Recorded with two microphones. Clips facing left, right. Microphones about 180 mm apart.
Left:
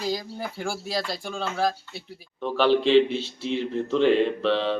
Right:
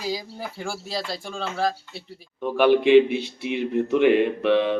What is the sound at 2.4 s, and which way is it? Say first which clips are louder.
Speech: right 3 dB; 15° right (ahead or behind).